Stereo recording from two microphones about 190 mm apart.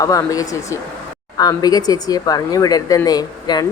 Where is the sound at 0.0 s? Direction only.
20° left (ahead or behind).